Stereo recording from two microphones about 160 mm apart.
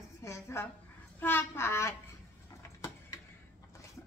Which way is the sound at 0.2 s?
15° left (ahead or behind).